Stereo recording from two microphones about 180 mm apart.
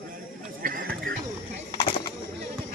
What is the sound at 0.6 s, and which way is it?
Chatter, 50° right (ahead or behind).